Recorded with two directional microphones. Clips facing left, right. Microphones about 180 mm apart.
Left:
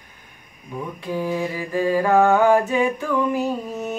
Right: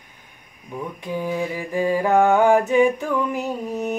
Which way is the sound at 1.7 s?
15° right (ahead or behind).